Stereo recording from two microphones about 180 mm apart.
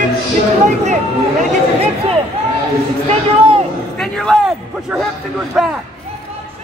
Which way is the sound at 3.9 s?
Centre (ahead or behind).